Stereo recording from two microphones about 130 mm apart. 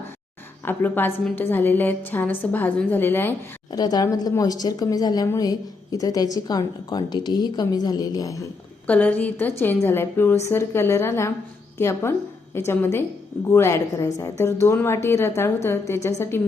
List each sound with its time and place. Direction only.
0.6 s a woman's voice: 15° left (ahead or behind)
3.7 s a woman's voice: 30° left (ahead or behind)
8.9 s a woman's voice: 10° left (ahead or behind)